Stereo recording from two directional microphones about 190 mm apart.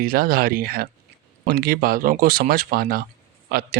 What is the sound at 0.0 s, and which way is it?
Speech, 50° right (ahead or behind).